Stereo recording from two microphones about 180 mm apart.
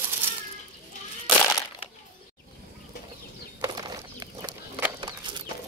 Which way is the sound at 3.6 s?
20° right (ahead or behind).